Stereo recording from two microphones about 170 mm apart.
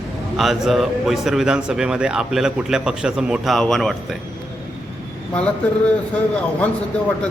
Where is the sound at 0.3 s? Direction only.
Centre (ahead or behind).